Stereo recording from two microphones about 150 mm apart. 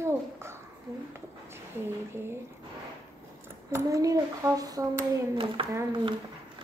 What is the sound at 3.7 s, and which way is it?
Speech, 20° right (ahead or behind).